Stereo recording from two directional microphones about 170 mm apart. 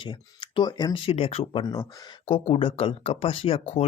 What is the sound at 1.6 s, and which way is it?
Speech, 25° left (ahead or behind).